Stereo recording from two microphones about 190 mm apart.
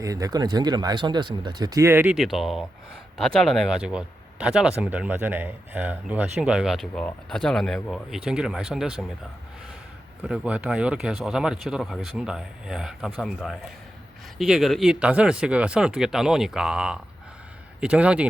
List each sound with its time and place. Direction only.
0.0 s speech: 20° right (ahead or behind); by 9.0 s 5° right (ahead or behind)
10.2 s speech: 5° right (ahead or behind)